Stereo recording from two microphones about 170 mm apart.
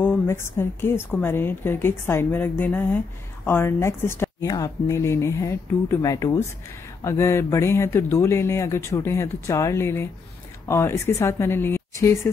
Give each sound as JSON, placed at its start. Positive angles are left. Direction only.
{"t": 0.0, "sound": "speech", "side_deg": 15}